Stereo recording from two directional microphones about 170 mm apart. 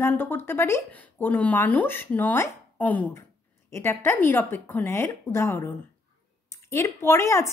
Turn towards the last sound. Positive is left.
turn(degrees=15)  # may be behind; listen again after turning